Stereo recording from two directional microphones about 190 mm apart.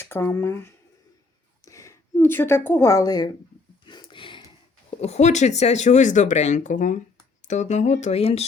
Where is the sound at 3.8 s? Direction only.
25° left (ahead or behind).